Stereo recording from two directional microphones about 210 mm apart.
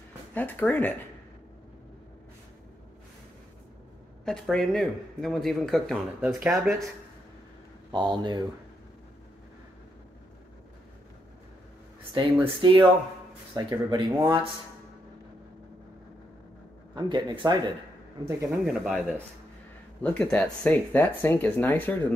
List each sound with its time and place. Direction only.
0.3 s speech: 10° left (ahead or behind)
4.2 s speech: centre (ahead or behind)
7.9 s speech: 20° right (ahead or behind)
12.0 s a sound: 10° right (ahead or behind)
12.4 s speech: 25° right (ahead or behind)
16.9 s speech: 20° right (ahead or behind)
18.6 s speech: 5° right (ahead or behind)